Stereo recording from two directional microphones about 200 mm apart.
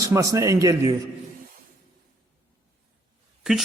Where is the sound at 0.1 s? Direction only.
15° right (ahead or behind).